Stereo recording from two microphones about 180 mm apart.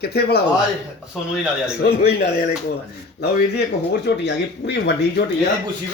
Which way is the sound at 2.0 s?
60° left (ahead or behind).